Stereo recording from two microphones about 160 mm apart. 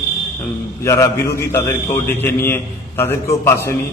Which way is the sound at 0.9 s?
20° left (ahead or behind).